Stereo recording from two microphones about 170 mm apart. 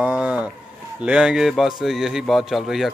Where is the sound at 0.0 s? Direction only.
10° right (ahead or behind).